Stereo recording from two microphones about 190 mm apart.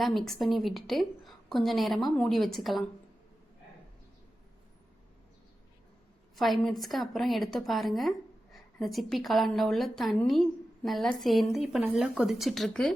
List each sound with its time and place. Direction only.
0.0 s a woman's voice: centre (ahead or behind)
6.3 s a woman's voice: centre (ahead or behind)